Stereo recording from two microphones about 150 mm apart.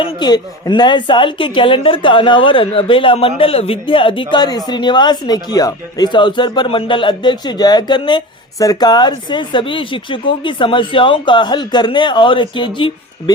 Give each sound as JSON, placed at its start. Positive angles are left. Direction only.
{"t": 0.0, "sound": "a woman's voice", "side_deg": 30}